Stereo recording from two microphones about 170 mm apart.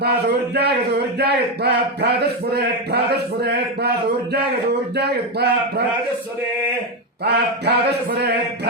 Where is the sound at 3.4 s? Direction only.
70° right (ahead or behind).